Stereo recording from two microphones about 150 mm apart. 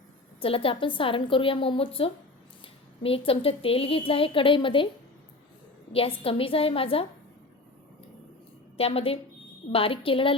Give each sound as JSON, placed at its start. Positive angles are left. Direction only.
{"t": 0.3, "sound": "a woman's voice", "side_deg": 40}
{"t": 5.9, "sound": "a woman's voice", "side_deg": 40}
{"t": 8.8, "sound": "a woman's voice", "side_deg": 40}